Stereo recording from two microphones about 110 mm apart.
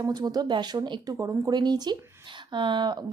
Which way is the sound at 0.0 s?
35° right (ahead or behind).